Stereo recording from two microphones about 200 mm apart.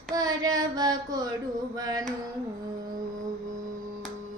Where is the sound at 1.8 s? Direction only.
20° right (ahead or behind).